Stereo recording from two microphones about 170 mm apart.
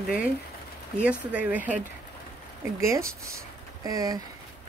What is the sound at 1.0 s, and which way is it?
Speech, 5° right (ahead or behind).